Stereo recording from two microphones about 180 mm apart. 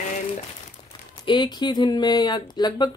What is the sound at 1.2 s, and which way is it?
Speech, 25° left (ahead or behind).